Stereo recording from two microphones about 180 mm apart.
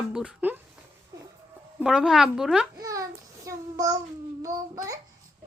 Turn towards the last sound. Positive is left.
turn(degrees=-15)  # may be behind; listen again after turning